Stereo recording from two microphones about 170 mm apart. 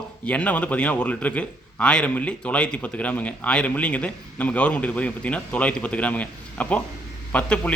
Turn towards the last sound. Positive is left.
turn(degrees=5)  # may be behind; listen again after turning